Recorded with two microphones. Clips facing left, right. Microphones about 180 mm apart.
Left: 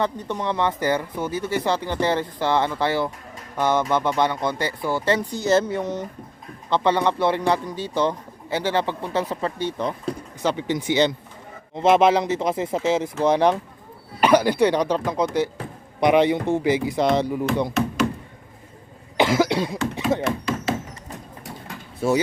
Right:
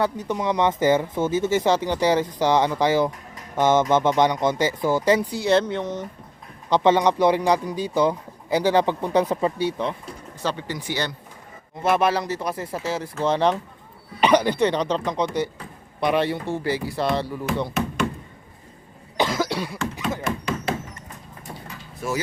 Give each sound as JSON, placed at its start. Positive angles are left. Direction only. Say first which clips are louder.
{"t": 0.0, "sound": "speech", "louder": "right 1 dB", "side_deg": -10}
{"t": 5.5, "sound": "speech", "louder": "left 1 dB", "side_deg": 5}
{"t": 6.7, "sound": "speech", "louder": "right 2 dB", "side_deg": -15}
{"t": 10.4, "sound": "speech", "louder": "left 5 dB", "side_deg": 15}
{"t": 19.1, "sound": "cough", "louder": "left 4 dB", "side_deg": 15}